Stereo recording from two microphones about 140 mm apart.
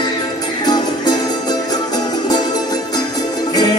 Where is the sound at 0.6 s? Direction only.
30° left (ahead or behind).